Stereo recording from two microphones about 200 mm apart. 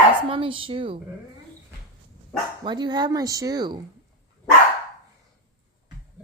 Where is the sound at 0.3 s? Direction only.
25° right (ahead or behind).